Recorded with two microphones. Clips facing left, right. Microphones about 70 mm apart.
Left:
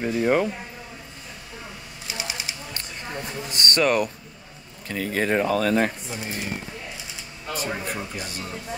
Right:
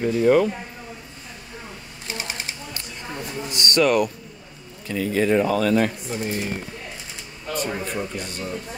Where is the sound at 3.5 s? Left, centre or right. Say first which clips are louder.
Right 2 dB; left.